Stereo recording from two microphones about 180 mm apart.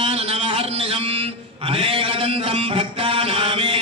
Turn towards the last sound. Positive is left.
turn(degrees=-30)  # may be behind; listen again after turning